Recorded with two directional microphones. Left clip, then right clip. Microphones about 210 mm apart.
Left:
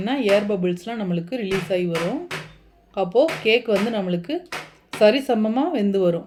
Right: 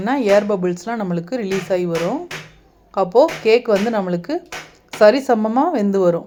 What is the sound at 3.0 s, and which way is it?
Speech, 5° right (ahead or behind).